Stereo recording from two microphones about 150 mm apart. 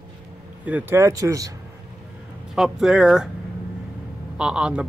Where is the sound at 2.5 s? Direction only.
Centre (ahead or behind).